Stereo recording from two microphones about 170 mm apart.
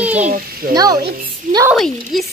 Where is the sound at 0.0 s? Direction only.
10° right (ahead or behind).